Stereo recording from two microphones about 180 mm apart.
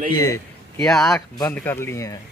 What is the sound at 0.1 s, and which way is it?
Speech, 20° left (ahead or behind).